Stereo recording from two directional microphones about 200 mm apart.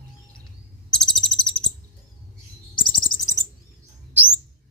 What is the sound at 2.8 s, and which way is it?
Chirp, 25° left (ahead or behind).